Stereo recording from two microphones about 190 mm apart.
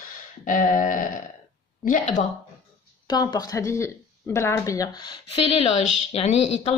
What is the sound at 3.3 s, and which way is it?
Speech, 20° left (ahead or behind).